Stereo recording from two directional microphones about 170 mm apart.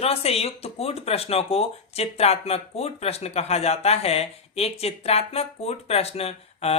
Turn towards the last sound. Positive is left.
turn(degrees=35)  # may be behind; listen again after turning